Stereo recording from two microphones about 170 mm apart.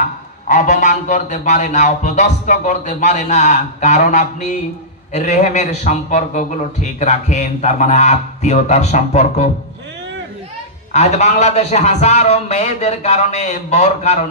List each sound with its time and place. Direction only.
0.5 s a man's voice: 45° left (ahead or behind)
10.9 s a man's voice: 40° left (ahead or behind)